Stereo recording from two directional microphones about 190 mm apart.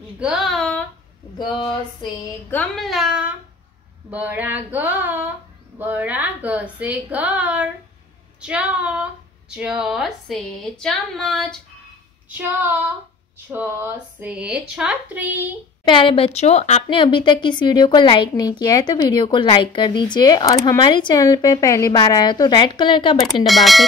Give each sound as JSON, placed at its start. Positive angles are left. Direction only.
{"t": 0.2, "sound": "a sound", "side_deg": 0}
{"t": 2.5, "sound": "a woman's voice", "side_deg": 0}
{"t": 12.3, "sound": "speech", "side_deg": -10}
{"t": 15.8, "sound": "speech", "side_deg": 25}
{"t": 23.4, "sound": "a woman's voice", "side_deg": 0}